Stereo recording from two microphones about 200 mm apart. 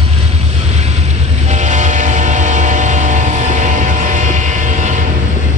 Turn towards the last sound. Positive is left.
turn(degrees=-40)  # may be behind; listen again after turning